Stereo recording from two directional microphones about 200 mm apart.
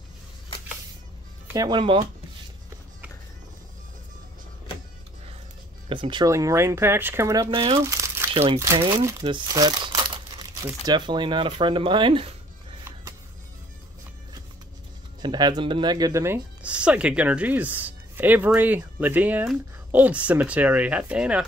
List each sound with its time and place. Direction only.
1.5 s speech: 20° right (ahead or behind)
5.9 s speech: 25° right (ahead or behind)
15.2 s speech: 20° right (ahead or behind); by 21.5 s 5° right (ahead or behind)